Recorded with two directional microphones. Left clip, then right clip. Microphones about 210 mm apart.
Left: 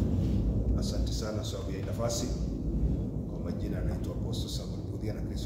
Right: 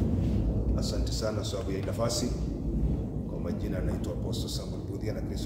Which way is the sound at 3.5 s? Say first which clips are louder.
Right 3 dB; 15° right (ahead or behind).